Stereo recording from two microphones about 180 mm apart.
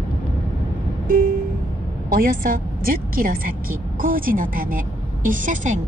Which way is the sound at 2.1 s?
50° right (ahead or behind).